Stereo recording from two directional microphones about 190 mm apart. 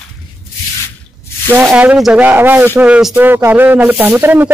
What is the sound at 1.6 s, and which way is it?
Speech, 5° right (ahead or behind).